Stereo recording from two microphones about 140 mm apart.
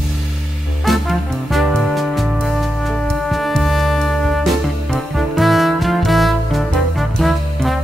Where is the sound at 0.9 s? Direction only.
Centre (ahead or behind).